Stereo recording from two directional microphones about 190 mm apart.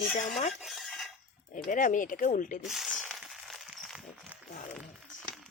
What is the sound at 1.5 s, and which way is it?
Speech, 45° left (ahead or behind).